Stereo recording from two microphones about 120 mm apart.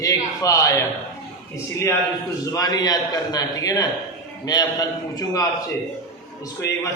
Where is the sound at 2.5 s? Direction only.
30° left (ahead or behind).